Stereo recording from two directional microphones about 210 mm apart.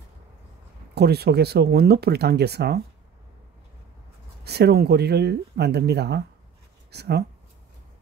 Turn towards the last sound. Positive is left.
turn(degrees=-50)  # may be behind; listen again after turning